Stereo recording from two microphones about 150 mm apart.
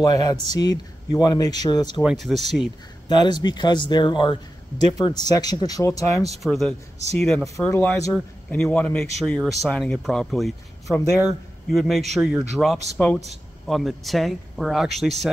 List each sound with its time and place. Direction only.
0.0 s speech: 25° left (ahead or behind)
2.0 s speech: centre (ahead or behind)
3.1 s speech: 30° left (ahead or behind)
6.4 s a man's voice: centre (ahead or behind)